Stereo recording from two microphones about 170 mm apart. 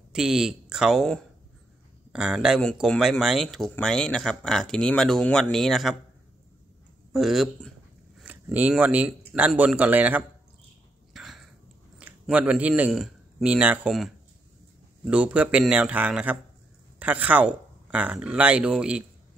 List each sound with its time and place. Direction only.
0.1 s speech: 5° right (ahead or behind)
7.1 s speech: centre (ahead or behind)
11.1 s a sound: centre (ahead or behind)
12.0 s a man's voice: 10° right (ahead or behind)